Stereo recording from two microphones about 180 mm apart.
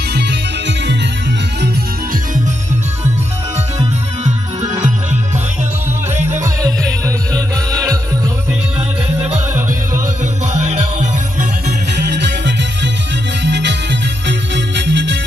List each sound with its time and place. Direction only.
0.1 s music: 70° right (ahead or behind)
6.4 s music: 15° right (ahead or behind)
9.5 s music: 15° right (ahead or behind)
10.6 s music: 40° right (ahead or behind)
11.9 s music: 70° right (ahead or behind)